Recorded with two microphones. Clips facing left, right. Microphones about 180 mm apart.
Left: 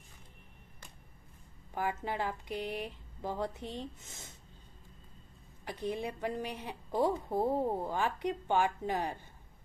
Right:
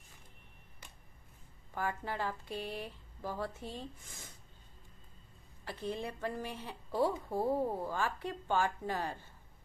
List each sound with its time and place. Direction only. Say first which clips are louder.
1.7 s speech: left 2 dB; 20° left (ahead or behind)
5.7 s a woman's voice: left 3 dB; 15° left (ahead or behind)